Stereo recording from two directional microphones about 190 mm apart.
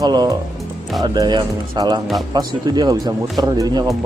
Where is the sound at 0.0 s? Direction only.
20° right (ahead or behind).